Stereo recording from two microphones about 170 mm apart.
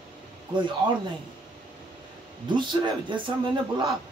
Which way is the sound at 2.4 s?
25° right (ahead or behind).